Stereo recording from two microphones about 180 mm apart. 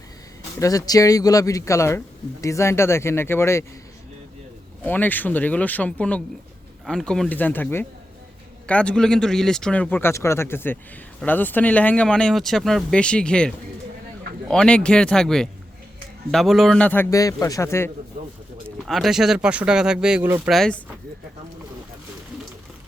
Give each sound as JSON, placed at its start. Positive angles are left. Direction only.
{"t": 0.6, "sound": "speech", "side_deg": 20}
{"t": 4.8, "sound": "speech", "side_deg": 10}
{"t": 18.9, "sound": "speech", "side_deg": 0}
{"t": 20.5, "sound": "speech", "side_deg": 5}